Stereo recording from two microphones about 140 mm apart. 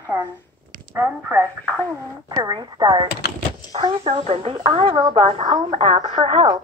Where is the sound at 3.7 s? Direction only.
45° right (ahead or behind).